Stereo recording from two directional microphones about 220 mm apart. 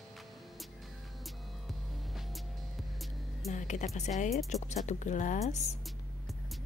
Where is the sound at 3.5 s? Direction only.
35° left (ahead or behind).